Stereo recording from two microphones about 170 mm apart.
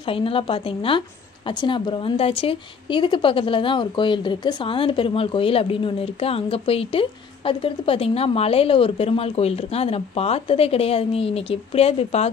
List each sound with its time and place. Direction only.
0.1 s a woman's voice: 30° left (ahead or behind)